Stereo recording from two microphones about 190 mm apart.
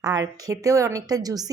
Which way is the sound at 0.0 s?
20° right (ahead or behind).